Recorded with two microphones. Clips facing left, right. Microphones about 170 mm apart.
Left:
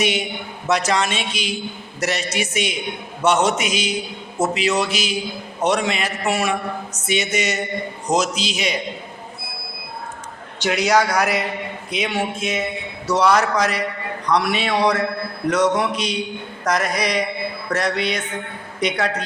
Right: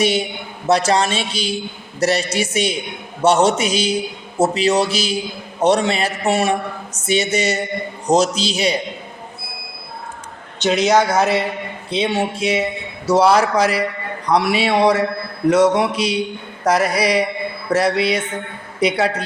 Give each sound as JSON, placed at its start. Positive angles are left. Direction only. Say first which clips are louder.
{"t": 0.0, "sound": "a man's voice", "louder": "right 4 dB", "side_deg": -30}
{"t": 10.6, "sound": "a man's voice", "louder": "right 3 dB", "side_deg": -20}
{"t": 15.9, "sound": "mantra", "louder": "right 4 dB", "side_deg": -10}
{"t": 16.9, "sound": "a man's voice", "louder": "right 4 dB", "side_deg": -30}
{"t": 18.0, "sound": "mantra", "louder": "right 5 dB", "side_deg": -10}